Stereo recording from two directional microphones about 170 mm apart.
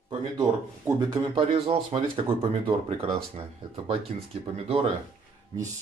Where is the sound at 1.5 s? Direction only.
35° right (ahead or behind).